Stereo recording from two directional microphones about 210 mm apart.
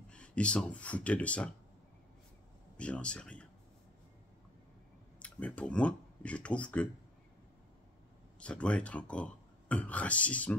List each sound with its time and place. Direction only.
0.1 s speech: 5° left (ahead or behind)
2.8 s speech: 5° left (ahead or behind)
5.2 s speech: 5° left (ahead or behind)
8.4 s speech: 5° left (ahead or behind)